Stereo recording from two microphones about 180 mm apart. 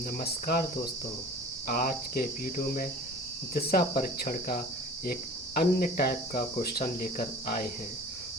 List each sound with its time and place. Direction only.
0.2 s speech: 55° left (ahead or behind)
1.6 s speech: 50° left (ahead or behind)
3.5 s cricket: 55° left (ahead or behind)
5.5 s speech: 55° left (ahead or behind)